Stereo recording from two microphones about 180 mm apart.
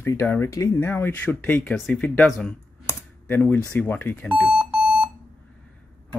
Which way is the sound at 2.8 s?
10° left (ahead or behind).